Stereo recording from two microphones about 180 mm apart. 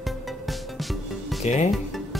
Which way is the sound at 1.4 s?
40° left (ahead or behind).